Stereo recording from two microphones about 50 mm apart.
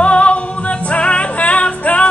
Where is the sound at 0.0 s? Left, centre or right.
Left.